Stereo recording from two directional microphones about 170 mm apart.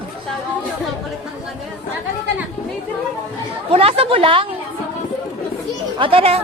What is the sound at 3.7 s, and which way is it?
Speech, 35° right (ahead or behind).